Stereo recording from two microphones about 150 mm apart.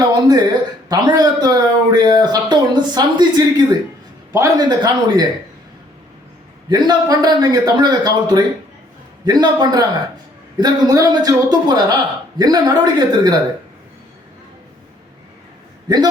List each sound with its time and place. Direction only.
0.0 s a sound: 25° right (ahead or behind)
0.9 s speech: 25° right (ahead or behind)
6.7 s speech: 25° right (ahead or behind)